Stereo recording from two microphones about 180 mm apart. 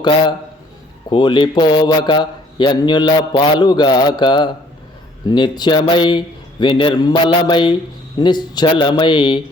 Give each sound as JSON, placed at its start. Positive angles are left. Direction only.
{"t": 1.1, "sound": "a man's voice", "side_deg": 25}